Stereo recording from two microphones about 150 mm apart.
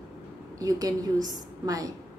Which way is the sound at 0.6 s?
25° right (ahead or behind).